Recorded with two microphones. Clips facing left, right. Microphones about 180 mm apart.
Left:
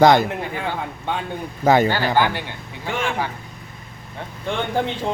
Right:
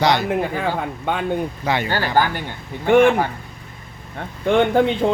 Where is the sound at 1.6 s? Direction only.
45° left (ahead or behind).